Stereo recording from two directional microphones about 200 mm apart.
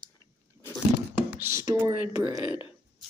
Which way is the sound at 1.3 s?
15° right (ahead or behind).